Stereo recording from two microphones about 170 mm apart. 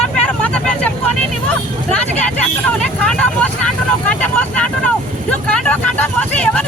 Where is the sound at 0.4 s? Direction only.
5° left (ahead or behind).